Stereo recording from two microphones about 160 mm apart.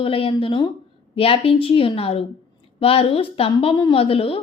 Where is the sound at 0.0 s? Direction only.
35° left (ahead or behind).